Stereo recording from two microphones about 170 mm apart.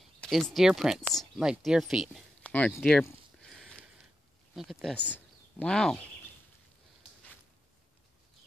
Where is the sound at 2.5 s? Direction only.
10° left (ahead or behind).